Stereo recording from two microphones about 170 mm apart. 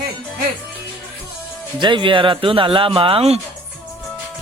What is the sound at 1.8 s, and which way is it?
Speech, 30° right (ahead or behind).